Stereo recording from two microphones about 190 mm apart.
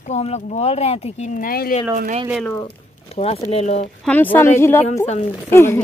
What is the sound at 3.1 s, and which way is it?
Speech, 30° left (ahead or behind).